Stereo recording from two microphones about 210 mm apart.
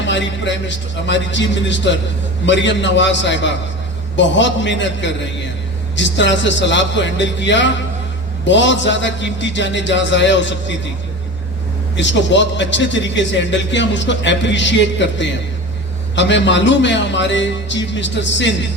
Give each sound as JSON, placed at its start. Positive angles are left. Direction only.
{"t": 0.0, "sound": "a man's voice", "side_deg": 60}
{"t": 11.9, "sound": "a man's voice", "side_deg": 60}